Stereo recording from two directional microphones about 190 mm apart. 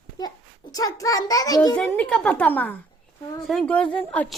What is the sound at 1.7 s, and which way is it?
A woman's voice, 5° left (ahead or behind).